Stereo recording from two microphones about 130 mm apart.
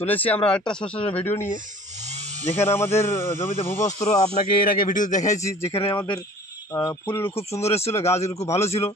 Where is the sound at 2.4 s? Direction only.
15° left (ahead or behind).